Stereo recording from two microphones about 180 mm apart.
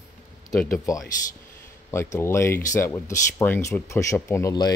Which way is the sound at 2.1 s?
15° left (ahead or behind).